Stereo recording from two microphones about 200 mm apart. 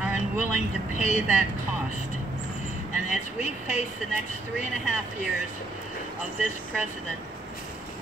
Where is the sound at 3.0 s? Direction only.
35° left (ahead or behind).